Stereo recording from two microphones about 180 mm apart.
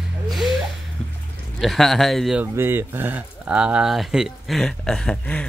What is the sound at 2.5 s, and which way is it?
Speech, 15° right (ahead or behind).